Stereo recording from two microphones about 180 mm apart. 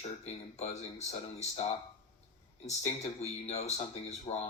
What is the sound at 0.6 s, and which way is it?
Speech, 40° left (ahead or behind).